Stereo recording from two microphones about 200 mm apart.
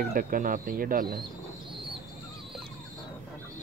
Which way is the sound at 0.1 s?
45° right (ahead or behind).